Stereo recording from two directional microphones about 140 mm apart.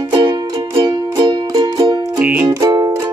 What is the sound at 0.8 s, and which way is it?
Music, 30° right (ahead or behind).